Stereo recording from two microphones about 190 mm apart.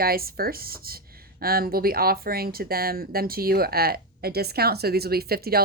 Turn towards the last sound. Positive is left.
turn(degrees=-55)  # may be behind; listen again after turning